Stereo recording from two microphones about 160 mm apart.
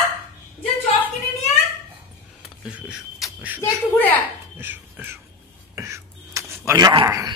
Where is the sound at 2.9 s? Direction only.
10° right (ahead or behind).